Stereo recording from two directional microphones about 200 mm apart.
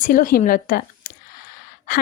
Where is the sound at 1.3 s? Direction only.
50° left (ahead or behind).